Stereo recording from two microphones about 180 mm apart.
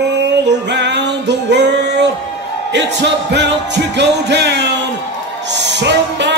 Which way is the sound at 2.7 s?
75° right (ahead or behind).